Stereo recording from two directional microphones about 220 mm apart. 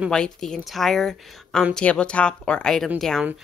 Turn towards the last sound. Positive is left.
turn(degrees=0)  # may be behind; listen again after turning